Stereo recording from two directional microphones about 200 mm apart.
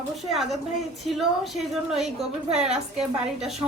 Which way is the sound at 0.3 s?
Centre (ahead or behind).